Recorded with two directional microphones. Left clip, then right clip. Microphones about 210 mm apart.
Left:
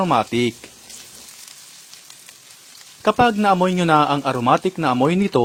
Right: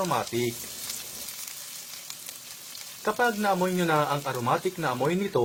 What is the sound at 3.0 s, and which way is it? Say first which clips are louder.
A man's voice: left 9 dB; 50° left (ahead or behind).